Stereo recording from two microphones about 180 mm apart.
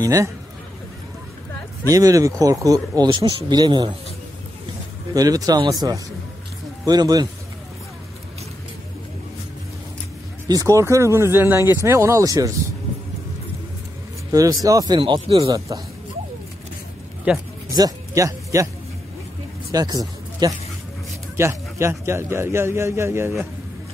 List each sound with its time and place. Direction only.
0.0 s speech: 20° right (ahead or behind)
1.9 s speech: 20° right (ahead or behind)
5.1 s speech: 20° right (ahead or behind)
10.5 s speech: 20° right (ahead or behind)
14.3 s speech: 20° right (ahead or behind)
17.3 s speech: 5° right (ahead or behind)
17.7 s speech: 20° right (ahead or behind)
19.7 s speech: 20° right (ahead or behind)